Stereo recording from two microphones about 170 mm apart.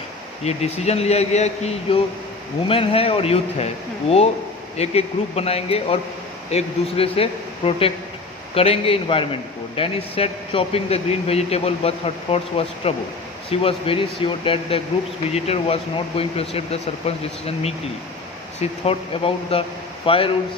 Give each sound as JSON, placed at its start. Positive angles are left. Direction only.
{"t": 0.4, "sound": "a man's voice", "side_deg": 40}
{"t": 4.8, "sound": "a man's voice", "side_deg": 40}